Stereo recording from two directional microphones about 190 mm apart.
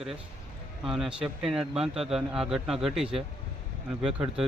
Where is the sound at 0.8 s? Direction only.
5° right (ahead or behind).